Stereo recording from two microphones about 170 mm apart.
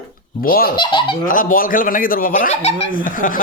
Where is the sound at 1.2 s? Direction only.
55° left (ahead or behind).